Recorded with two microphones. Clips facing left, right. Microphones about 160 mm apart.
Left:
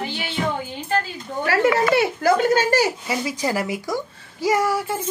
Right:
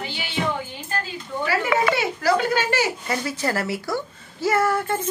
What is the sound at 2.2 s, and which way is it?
Speech, 40° left (ahead or behind).